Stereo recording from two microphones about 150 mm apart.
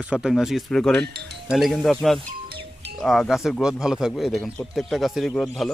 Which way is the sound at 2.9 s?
Centre (ahead or behind).